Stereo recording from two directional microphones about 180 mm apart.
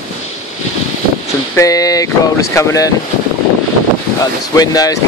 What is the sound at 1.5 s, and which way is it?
Speech, 20° left (ahead or behind).